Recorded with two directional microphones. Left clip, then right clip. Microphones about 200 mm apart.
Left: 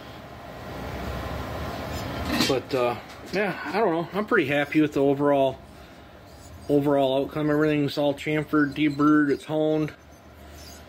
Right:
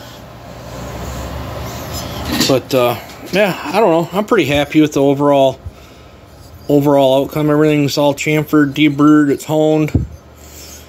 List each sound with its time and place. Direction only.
2.5 s speech: 50° right (ahead or behind); by 5.6 s 15° right (ahead or behind)
6.7 s speech: 25° right (ahead or behind)